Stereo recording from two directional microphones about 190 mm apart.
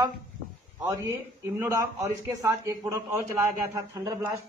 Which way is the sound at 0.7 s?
15° right (ahead or behind).